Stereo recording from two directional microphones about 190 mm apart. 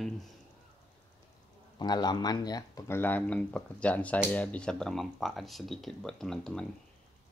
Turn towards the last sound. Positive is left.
turn(degrees=5)  # may be behind; listen again after turning